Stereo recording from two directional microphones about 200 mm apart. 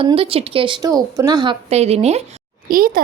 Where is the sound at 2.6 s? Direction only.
45° right (ahead or behind).